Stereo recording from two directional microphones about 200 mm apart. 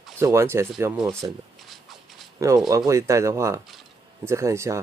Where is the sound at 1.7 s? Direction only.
Centre (ahead or behind).